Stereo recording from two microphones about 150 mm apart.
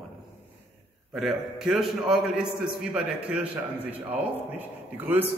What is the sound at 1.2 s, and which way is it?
A man's voice, centre (ahead or behind).